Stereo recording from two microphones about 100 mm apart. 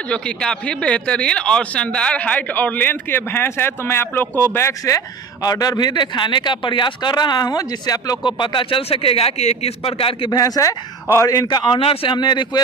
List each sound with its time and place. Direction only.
0.1 s speech: 10° left (ahead or behind); by 8.2 s 40° left (ahead or behind)
8.3 s a man's voice: 55° left (ahead or behind)
10.3 s speech: 35° left (ahead or behind)
11.8 s speech: 65° left (ahead or behind); by 12.6 s 50° left (ahead or behind)